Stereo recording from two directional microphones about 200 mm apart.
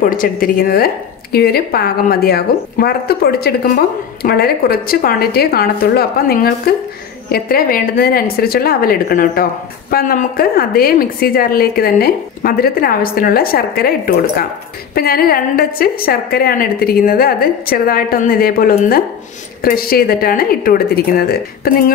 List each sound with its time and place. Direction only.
0.0 s a woman's voice: 45° left (ahead or behind)